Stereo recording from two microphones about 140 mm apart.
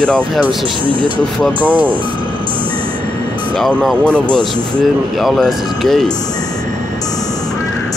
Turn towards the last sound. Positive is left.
turn(degrees=0)  # may be behind; listen again after turning